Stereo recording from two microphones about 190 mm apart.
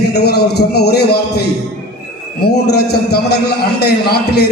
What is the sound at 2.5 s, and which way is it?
A man's voice, 60° left (ahead or behind).